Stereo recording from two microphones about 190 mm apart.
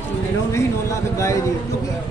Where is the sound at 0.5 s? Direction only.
15° left (ahead or behind).